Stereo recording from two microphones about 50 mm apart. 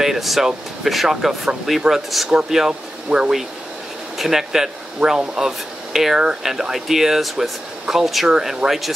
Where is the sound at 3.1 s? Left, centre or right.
Right.